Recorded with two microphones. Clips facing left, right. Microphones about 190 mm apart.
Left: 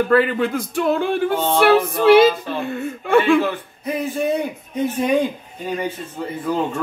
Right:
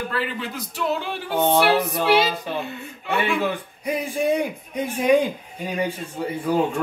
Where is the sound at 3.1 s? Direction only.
50° left (ahead or behind).